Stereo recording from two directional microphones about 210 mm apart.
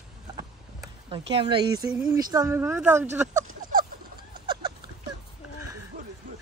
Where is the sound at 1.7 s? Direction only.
15° right (ahead or behind).